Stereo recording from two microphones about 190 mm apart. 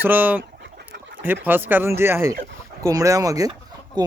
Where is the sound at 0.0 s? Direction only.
10° right (ahead or behind).